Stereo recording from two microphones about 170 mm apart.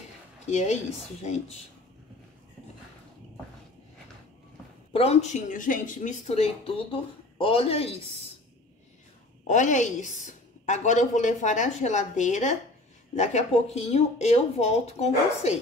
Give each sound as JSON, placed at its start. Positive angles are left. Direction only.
{"t": 0.5, "sound": "speech", "side_deg": 40}
{"t": 4.9, "sound": "speech", "side_deg": 35}
{"t": 9.5, "sound": "a woman's voice", "side_deg": 45}